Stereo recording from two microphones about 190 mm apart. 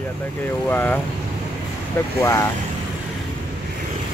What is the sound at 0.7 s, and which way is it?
Speech, 10° left (ahead or behind).